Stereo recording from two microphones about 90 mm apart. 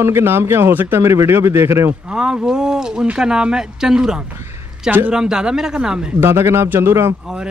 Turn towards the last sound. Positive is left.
turn(degrees=-25)  # may be behind; listen again after turning